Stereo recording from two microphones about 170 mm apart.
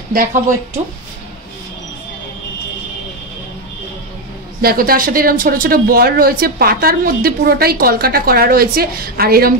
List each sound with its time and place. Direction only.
0.1 s speech: 60° right (ahead or behind)
4.6 s speech: 60° right (ahead or behind)